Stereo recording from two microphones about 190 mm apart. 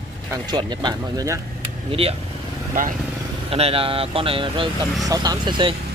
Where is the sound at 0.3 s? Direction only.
20° right (ahead or behind).